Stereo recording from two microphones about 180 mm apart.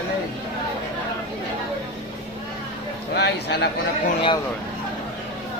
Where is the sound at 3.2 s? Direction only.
65° left (ahead or behind).